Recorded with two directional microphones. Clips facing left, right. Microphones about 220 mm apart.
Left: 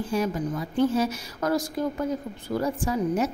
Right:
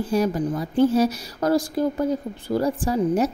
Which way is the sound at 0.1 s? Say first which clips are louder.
Right 5 dB; 35° right (ahead or behind).